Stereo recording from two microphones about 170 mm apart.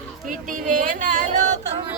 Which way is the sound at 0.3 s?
50° right (ahead or behind).